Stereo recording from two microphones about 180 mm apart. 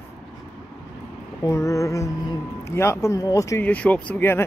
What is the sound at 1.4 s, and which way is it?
Speech, 15° left (ahead or behind).